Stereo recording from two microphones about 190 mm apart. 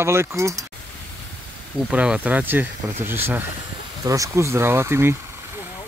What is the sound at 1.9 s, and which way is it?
Speech, 5° right (ahead or behind).